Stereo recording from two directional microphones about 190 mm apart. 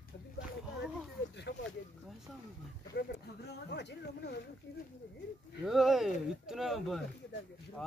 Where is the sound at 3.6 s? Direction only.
65° left (ahead or behind).